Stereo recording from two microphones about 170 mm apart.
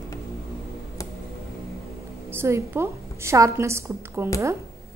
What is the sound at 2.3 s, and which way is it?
A woman's voice, 15° right (ahead or behind).